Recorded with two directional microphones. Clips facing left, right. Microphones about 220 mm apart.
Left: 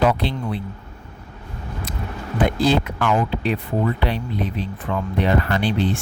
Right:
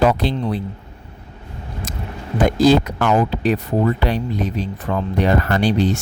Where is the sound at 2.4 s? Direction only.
40° right (ahead or behind).